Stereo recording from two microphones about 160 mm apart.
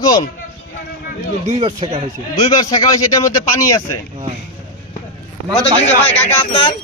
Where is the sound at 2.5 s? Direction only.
25° left (ahead or behind).